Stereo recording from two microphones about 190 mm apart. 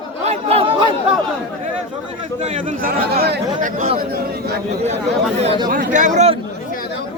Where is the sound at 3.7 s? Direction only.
45° right (ahead or behind).